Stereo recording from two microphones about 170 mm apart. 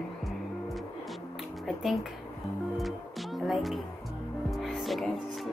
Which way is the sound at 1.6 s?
Centre (ahead or behind).